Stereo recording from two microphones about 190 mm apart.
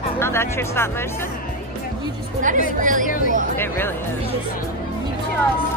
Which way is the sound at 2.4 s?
45° right (ahead or behind).